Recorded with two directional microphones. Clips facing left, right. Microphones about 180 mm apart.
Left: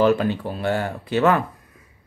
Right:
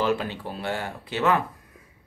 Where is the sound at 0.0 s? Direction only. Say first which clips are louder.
Left 7 dB; 50° left (ahead or behind).